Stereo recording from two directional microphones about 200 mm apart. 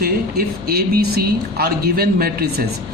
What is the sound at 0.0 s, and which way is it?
Speech, 50° right (ahead or behind).